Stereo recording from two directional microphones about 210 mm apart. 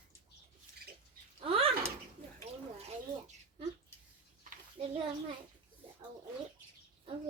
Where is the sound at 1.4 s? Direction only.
25° right (ahead or behind).